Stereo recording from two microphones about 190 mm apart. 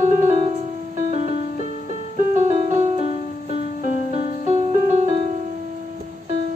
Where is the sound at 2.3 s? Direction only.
40° right (ahead or behind).